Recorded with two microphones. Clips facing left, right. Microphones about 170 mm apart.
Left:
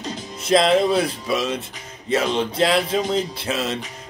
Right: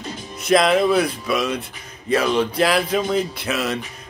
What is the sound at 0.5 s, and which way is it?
Music, 25° left (ahead or behind).